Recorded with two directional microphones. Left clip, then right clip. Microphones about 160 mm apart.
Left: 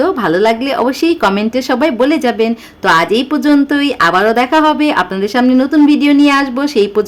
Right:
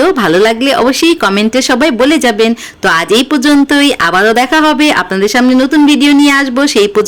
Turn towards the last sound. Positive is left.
turn(degrees=-15)  # may be behind; listen again after turning